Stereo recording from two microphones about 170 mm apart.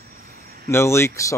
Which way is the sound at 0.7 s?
15° left (ahead or behind).